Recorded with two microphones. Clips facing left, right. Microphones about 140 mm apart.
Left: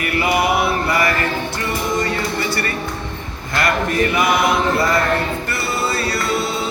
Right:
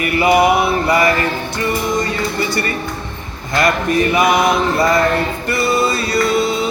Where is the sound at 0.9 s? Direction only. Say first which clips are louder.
Right 4 dB; 20° right (ahead or behind).